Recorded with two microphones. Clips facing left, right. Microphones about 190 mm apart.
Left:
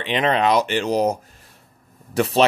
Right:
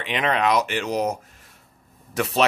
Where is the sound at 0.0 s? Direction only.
30° left (ahead or behind).